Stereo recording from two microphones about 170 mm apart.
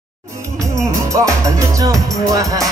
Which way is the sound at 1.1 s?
20° right (ahead or behind).